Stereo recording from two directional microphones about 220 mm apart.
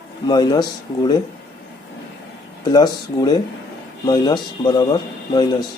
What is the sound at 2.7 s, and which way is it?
Speech, 20° left (ahead or behind).